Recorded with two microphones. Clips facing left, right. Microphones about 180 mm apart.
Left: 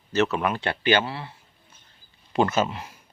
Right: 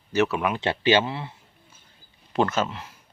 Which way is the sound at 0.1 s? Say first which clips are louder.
Even; 10° right (ahead or behind).